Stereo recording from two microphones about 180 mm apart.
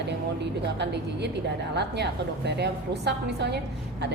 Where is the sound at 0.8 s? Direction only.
70° right (ahead or behind).